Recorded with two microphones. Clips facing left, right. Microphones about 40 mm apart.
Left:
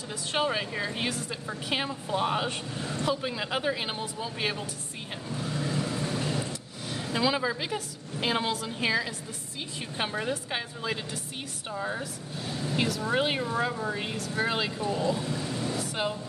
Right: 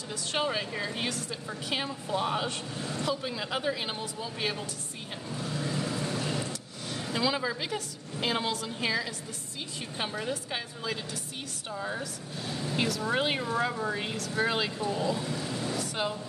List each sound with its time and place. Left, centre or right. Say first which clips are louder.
0.3 s a woman's voice: left 2 dB; centre
5.3 s vehicle: left 2 dB; centre
5.8 s a sound: left 1 dB; centre
6.2 s a woman's voice: left 1 dB; centre
12.4 s speech: left 1 dB; centre
15.7 s a sound: even; centre